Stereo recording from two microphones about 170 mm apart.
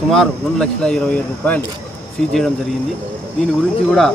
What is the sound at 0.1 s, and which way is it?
Speech, 5° left (ahead or behind).